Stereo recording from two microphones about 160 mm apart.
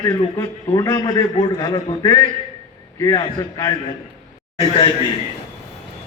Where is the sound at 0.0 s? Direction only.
20° left (ahead or behind).